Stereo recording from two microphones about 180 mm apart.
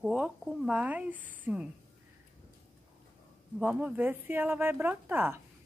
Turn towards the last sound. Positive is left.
turn(degrees=-10)  # may be behind; listen again after turning